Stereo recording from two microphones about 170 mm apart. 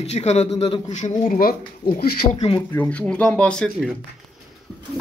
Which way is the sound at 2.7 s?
10° left (ahead or behind).